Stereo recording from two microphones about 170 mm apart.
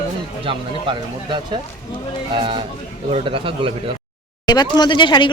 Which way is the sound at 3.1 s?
30° right (ahead or behind).